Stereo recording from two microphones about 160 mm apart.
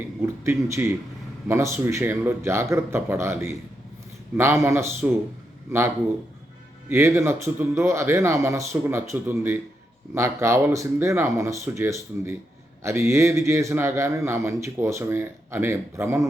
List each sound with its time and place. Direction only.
0.4 s a man's voice: 15° right (ahead or behind)
6.8 s a man's voice: 15° right (ahead or behind)